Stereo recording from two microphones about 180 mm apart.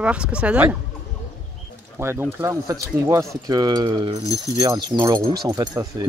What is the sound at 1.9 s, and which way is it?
Speech, 15° right (ahead or behind).